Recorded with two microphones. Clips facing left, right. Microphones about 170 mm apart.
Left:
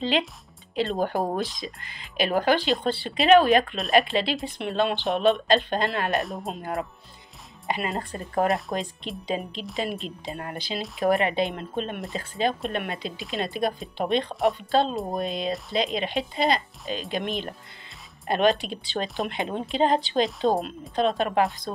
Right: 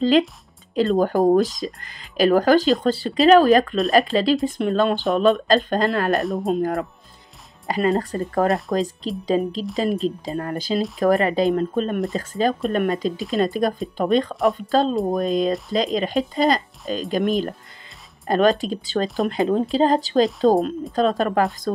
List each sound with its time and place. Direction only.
0.7 s speech: 40° right (ahead or behind)
8.5 s a woman's voice: centre (ahead or behind)
8.7 s speech: 40° right (ahead or behind)
14.3 s a woman's voice: centre (ahead or behind)
14.7 s speech: 40° right (ahead or behind)